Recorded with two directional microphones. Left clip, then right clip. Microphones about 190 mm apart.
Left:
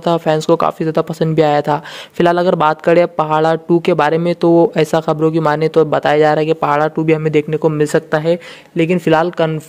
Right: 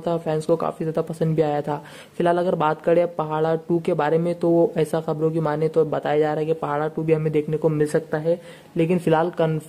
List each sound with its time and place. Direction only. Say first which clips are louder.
0.0 s speech: left 9 dB; 25° left (ahead or behind)